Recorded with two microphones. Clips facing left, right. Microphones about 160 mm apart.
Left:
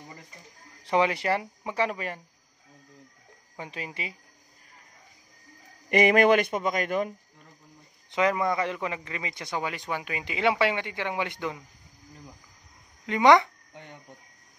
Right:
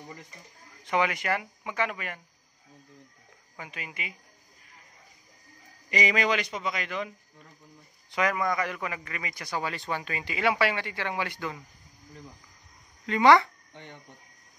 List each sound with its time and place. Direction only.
0.8 s speech: 30° left (ahead or behind)
3.5 s speech: 30° left (ahead or behind)
5.9 s a man's voice: 55° left (ahead or behind)
8.1 s a man's voice: 25° left (ahead or behind)
13.0 s speech: 20° left (ahead or behind)